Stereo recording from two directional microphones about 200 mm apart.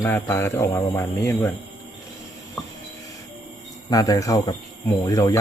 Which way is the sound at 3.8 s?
20° left (ahead or behind).